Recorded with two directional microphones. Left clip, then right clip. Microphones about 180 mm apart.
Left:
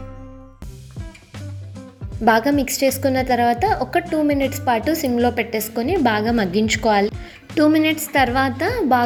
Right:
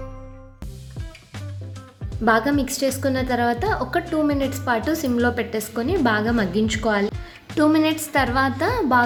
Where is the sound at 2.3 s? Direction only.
20° left (ahead or behind).